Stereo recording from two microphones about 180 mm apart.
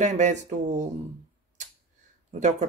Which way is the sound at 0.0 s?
40° right (ahead or behind).